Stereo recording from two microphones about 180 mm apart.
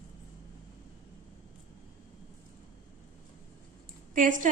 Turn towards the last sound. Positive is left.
turn(degrees=-45)  # may be behind; listen again after turning